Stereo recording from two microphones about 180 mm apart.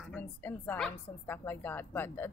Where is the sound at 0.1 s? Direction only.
10° left (ahead or behind).